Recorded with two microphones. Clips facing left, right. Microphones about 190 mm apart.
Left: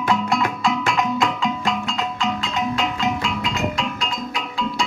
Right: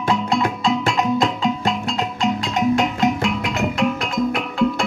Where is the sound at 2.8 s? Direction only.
50° right (ahead or behind).